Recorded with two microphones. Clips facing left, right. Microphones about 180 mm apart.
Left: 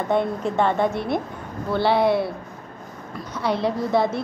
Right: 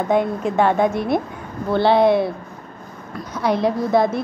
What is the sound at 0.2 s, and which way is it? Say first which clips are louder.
A woman's voice: right 3 dB; 15° right (ahead or behind).